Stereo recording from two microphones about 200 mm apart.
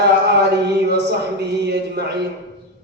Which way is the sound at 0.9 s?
55° right (ahead or behind).